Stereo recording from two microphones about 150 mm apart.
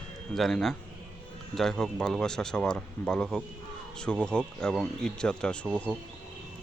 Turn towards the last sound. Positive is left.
turn(degrees=5)  # may be behind; listen again after turning